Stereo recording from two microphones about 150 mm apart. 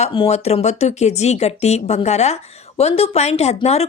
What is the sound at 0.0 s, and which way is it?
Speech, 40° left (ahead or behind).